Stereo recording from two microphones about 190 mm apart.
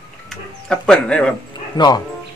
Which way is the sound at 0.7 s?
5° left (ahead or behind).